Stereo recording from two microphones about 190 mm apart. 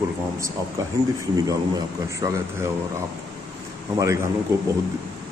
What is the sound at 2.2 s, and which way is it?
Speech, 20° right (ahead or behind).